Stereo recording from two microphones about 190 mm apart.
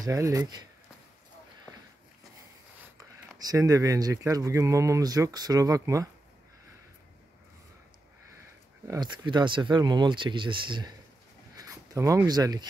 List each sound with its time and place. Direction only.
0.0 s speech: 15° right (ahead or behind)
3.0 s speech: 20° right (ahead or behind)
8.8 s speech: 20° right (ahead or behind)
11.5 s a sound: 20° right (ahead or behind)